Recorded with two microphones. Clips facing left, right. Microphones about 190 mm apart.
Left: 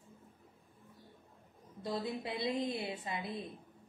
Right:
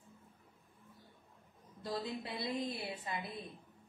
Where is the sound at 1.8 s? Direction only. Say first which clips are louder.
Left 2 dB; 25° left (ahead or behind).